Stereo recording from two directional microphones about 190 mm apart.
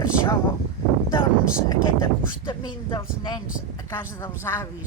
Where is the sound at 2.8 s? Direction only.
25° left (ahead or behind).